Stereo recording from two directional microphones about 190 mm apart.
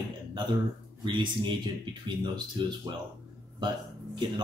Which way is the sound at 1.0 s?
25° right (ahead or behind).